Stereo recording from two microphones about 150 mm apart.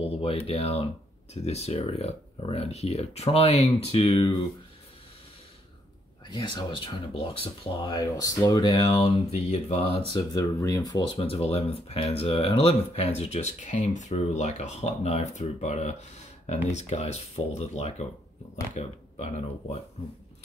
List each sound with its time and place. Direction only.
0.0 s speech: 40° left (ahead or behind)
6.2 s speech: 30° left (ahead or behind)
8.8 s speech: 40° left (ahead or behind)
10.3 s speech: 25° left (ahead or behind)
11.1 s speech: 40° left (ahead or behind)